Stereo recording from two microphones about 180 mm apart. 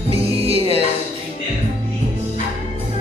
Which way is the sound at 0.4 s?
35° right (ahead or behind).